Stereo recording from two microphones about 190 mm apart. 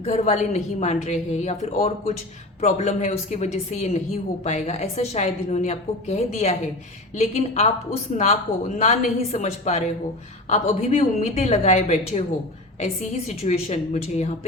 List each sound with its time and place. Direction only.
0.0 s a woman's voice: 35° left (ahead or behind)
8.8 s a woman's voice: 35° left (ahead or behind)